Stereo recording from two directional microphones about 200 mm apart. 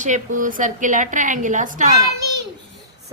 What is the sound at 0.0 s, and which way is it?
A woman's voice, 40° right (ahead or behind).